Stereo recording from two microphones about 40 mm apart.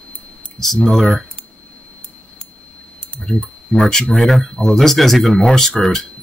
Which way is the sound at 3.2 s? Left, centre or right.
Left.